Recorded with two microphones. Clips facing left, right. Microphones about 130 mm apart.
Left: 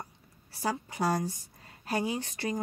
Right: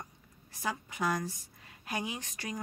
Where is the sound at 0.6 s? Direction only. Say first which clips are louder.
Left 4 dB; 35° left (ahead or behind).